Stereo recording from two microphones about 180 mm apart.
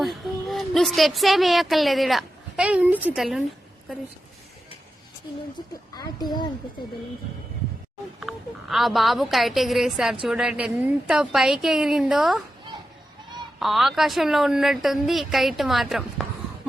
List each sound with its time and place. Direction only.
0.0 s speech: centre (ahead or behind)
6.0 s speech: 20° left (ahead or behind)
8.2 s a woman's voice: centre (ahead or behind)
13.6 s a woman's voice: centre (ahead or behind)